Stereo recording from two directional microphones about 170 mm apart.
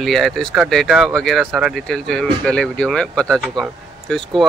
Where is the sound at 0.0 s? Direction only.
Centre (ahead or behind).